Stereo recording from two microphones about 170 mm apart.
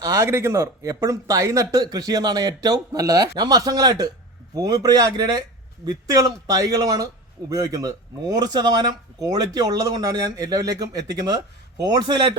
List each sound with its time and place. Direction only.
0.0 s speech: 15° right (ahead or behind)